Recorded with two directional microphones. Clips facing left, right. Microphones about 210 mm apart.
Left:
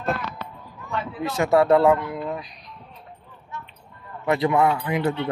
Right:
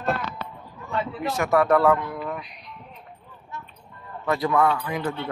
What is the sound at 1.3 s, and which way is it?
Speech, 25° left (ahead or behind).